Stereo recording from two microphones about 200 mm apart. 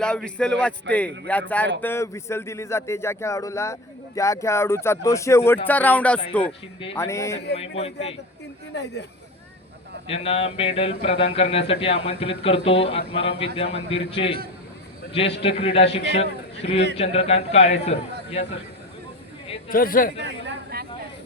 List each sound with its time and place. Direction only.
0.0 s speech: 5° left (ahead or behind)
7.8 s a man's voice: 30° left (ahead or behind)
8.7 s speech: 60° left (ahead or behind)
10.1 s a man's voice: 30° left (ahead or behind)
19.6 s speech: 45° left (ahead or behind)
20.1 s speech: 55° right (ahead or behind)